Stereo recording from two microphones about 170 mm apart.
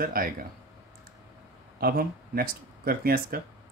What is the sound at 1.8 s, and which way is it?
Speech, 60° right (ahead or behind).